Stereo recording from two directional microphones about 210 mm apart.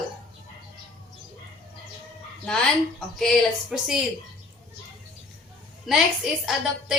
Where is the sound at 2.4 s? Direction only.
5° left (ahead or behind).